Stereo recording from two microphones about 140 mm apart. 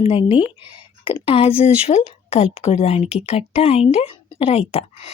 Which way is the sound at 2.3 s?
45° left (ahead or behind).